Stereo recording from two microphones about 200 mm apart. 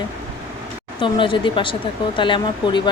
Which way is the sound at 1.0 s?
25° left (ahead or behind).